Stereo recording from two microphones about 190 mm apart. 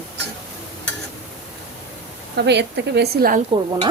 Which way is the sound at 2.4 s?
60° right (ahead or behind).